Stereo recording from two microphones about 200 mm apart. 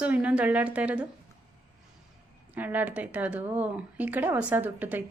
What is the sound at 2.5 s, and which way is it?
A woman's voice, 10° right (ahead or behind).